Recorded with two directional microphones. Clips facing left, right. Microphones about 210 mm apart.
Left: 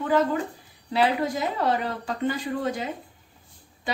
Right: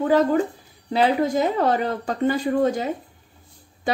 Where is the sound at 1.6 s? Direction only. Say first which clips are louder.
Right 4 dB; 45° right (ahead or behind).